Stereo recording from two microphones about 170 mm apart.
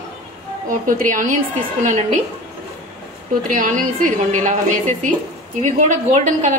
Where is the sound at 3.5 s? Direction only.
50° right (ahead or behind).